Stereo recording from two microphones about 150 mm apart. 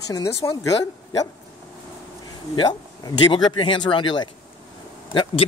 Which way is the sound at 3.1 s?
30° left (ahead or behind).